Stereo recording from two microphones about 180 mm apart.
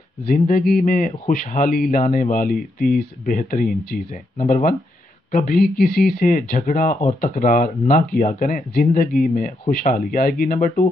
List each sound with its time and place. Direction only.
0.3 s speech: 50° left (ahead or behind)